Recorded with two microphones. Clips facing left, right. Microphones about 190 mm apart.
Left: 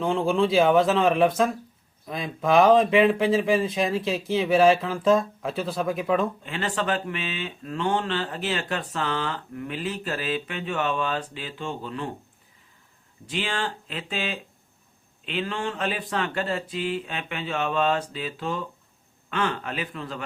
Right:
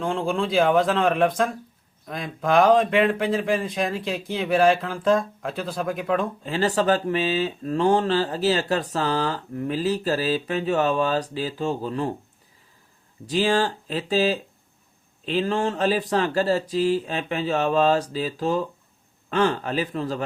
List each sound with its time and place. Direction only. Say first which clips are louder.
0.0 s speech: left 2 dB; centre (ahead or behind)
6.4 s speech: right 6 dB; 35° right (ahead or behind)
13.2 s speech: right 8 dB; 40° right (ahead or behind)